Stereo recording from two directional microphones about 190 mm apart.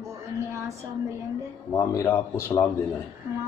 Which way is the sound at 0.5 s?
15° right (ahead or behind).